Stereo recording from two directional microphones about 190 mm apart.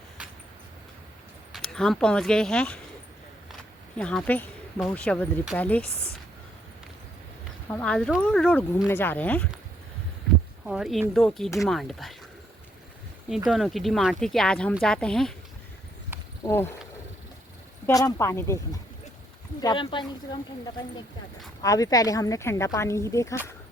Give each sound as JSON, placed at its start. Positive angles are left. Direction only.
{"t": 1.5, "sound": "speech", "side_deg": 0}
{"t": 5.9, "sound": "speech", "side_deg": 55}
{"t": 7.7, "sound": "speech", "side_deg": 5}
{"t": 10.7, "sound": "speech", "side_deg": 0}
{"t": 13.5, "sound": "speech", "side_deg": 0}
{"t": 17.8, "sound": "speech", "side_deg": 15}
{"t": 21.6, "sound": "speech", "side_deg": 20}